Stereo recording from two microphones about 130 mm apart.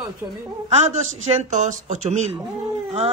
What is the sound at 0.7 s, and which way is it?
A man's voice, 65° right (ahead or behind).